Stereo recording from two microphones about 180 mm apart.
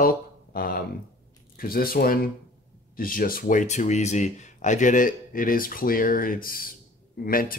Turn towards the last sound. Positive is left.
turn(degrees=55)  # may be behind; listen again after turning